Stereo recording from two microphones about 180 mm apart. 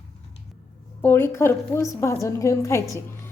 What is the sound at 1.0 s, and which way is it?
A woman's voice, 15° left (ahead or behind).